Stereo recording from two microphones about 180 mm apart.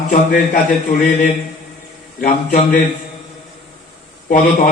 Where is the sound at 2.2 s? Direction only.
40° left (ahead or behind).